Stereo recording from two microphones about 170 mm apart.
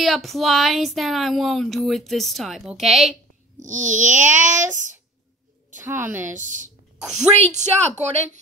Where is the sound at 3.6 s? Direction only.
45° right (ahead or behind).